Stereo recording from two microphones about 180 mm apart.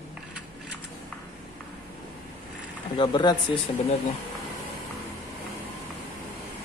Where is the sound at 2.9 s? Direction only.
25° left (ahead or behind).